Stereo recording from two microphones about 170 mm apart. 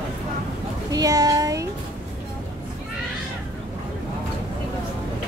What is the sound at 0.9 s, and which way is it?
Speech, 20° right (ahead or behind).